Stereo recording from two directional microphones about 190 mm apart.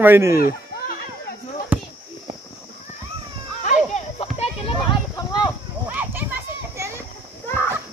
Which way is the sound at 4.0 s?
35° left (ahead or behind).